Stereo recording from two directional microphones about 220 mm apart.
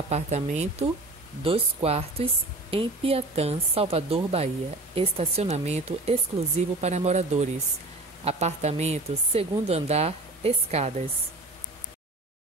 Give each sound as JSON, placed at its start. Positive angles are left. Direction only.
{"t": 0.1, "sound": "a woman's voice", "side_deg": -30}